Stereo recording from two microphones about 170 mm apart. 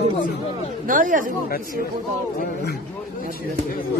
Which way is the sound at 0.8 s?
50° right (ahead or behind).